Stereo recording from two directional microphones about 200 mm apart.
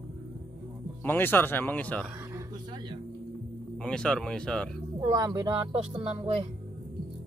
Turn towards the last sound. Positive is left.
turn(degrees=-30)  # may be behind; listen again after turning